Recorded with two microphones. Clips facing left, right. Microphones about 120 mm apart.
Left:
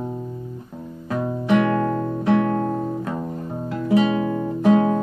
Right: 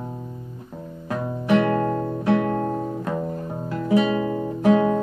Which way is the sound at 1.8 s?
15° right (ahead or behind).